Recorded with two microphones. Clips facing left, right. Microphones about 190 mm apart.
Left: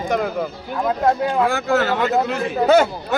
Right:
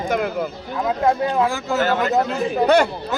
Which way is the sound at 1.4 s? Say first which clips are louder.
Left 2 dB; 60° left (ahead or behind).